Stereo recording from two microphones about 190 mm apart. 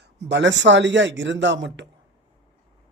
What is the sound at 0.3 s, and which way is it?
A man's voice, 70° right (ahead or behind).